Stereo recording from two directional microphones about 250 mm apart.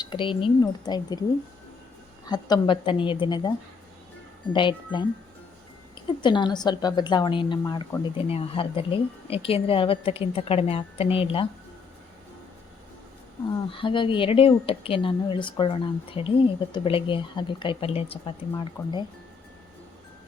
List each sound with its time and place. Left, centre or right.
0.0 s a woman's voice: centre
2.2 s a woman's voice: centre
4.5 s a woman's voice: centre
6.2 s a woman's voice: centre
13.7 s a woman's voice: left